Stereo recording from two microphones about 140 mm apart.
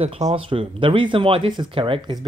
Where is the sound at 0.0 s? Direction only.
45° right (ahead or behind).